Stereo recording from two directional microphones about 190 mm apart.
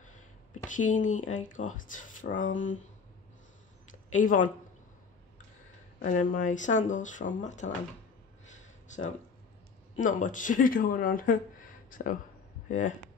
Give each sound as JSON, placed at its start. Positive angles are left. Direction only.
{"t": 0.7, "sound": "speech", "side_deg": 40}
{"t": 4.1, "sound": "speech", "side_deg": 45}
{"t": 5.9, "sound": "speech", "side_deg": 45}
{"t": 8.5, "sound": "a sound", "side_deg": 40}
{"t": 9.9, "sound": "speech", "side_deg": 45}
{"t": 12.6, "sound": "speech", "side_deg": 40}